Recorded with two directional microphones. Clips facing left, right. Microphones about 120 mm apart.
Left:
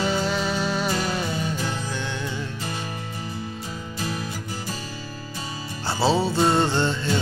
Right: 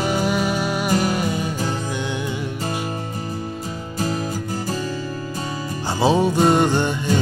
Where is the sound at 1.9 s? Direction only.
15° right (ahead or behind).